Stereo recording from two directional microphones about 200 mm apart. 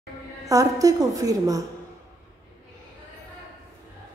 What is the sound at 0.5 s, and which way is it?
A woman's voice, 15° right (ahead or behind).